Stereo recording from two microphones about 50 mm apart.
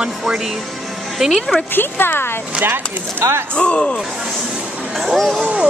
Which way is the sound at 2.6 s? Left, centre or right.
Right.